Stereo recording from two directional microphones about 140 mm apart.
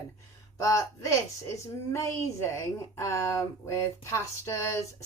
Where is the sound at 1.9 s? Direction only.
20° left (ahead or behind).